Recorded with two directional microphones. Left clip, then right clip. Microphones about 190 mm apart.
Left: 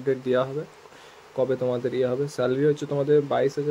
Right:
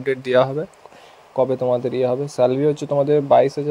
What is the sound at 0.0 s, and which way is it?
Speech, 40° right (ahead or behind).